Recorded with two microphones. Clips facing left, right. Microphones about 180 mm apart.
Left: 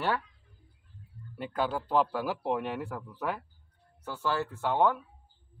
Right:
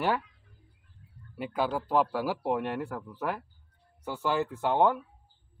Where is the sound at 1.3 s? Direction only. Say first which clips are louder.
Right 1 dB; 5° right (ahead or behind).